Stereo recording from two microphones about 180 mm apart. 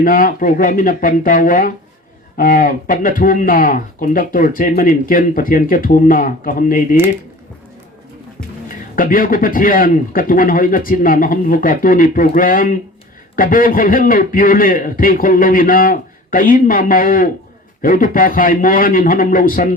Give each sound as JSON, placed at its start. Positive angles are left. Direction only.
{"t": 0.0, "sound": "speech", "side_deg": 50}
{"t": 9.0, "sound": "speech", "side_deg": 50}